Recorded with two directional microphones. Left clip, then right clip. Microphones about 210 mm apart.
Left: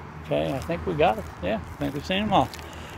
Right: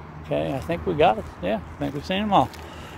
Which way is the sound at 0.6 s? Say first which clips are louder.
Right 5 dB; 15° right (ahead or behind).